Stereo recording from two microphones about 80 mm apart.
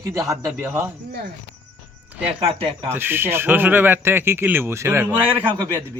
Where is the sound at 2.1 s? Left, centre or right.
Centre.